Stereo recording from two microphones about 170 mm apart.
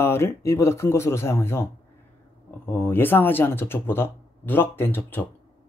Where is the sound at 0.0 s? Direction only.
15° left (ahead or behind).